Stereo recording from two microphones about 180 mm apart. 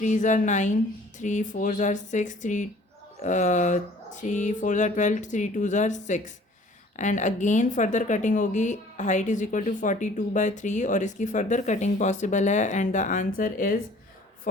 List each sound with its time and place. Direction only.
0.0 s a woman's voice: 45° left (ahead or behind)